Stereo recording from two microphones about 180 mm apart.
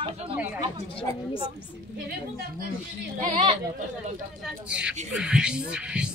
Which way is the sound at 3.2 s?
35° right (ahead or behind).